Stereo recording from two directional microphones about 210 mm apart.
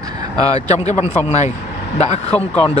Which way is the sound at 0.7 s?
35° left (ahead or behind).